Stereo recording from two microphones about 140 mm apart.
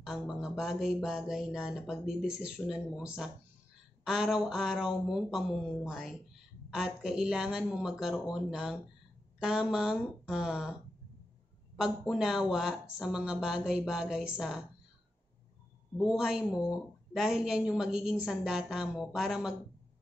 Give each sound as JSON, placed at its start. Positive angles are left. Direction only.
{"t": 0.0, "sound": "speech", "side_deg": -5}
{"t": 12.1, "sound": "speech", "side_deg": -5}
{"t": 16.0, "sound": "speech", "side_deg": -5}